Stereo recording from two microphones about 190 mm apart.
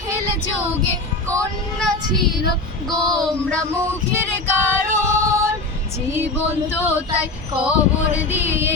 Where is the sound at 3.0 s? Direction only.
20° right (ahead or behind).